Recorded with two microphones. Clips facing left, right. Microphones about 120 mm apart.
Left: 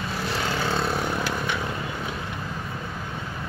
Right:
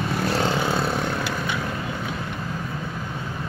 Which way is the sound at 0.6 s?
5° right (ahead or behind).